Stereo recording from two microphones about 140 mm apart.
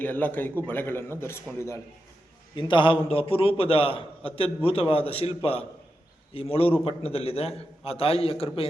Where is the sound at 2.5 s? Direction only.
35° left (ahead or behind).